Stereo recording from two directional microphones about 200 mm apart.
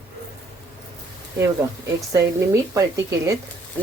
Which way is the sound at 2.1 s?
15° right (ahead or behind).